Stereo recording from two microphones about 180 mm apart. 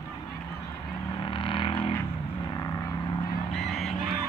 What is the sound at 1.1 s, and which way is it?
Vehicle, 25° left (ahead or behind).